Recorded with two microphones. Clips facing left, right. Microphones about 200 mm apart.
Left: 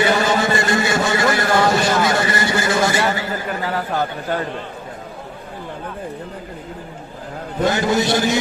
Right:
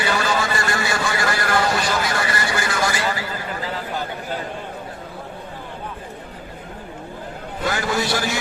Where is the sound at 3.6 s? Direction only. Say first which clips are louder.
Left 5 dB; 65° left (ahead or behind).